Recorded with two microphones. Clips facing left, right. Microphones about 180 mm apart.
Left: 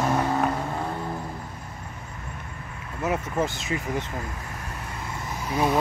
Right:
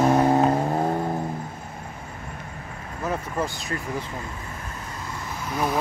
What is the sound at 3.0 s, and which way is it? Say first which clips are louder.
Speech: left 2 dB; 20° left (ahead or behind).